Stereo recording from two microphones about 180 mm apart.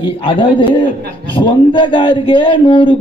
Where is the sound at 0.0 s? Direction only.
30° left (ahead or behind).